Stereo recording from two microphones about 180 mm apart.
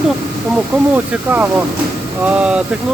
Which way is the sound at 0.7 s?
10° right (ahead or behind).